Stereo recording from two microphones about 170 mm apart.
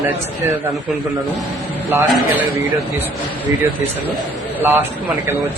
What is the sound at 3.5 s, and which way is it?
A man's voice, 20° right (ahead or behind).